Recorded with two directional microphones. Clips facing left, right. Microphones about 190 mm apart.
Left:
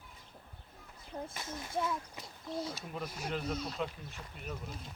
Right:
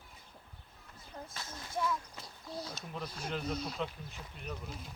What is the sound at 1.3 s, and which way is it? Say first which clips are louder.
Speech: left 3 dB; 15° left (ahead or behind).